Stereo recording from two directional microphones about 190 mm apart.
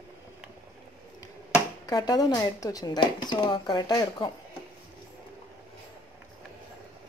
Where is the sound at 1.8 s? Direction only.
20° left (ahead or behind).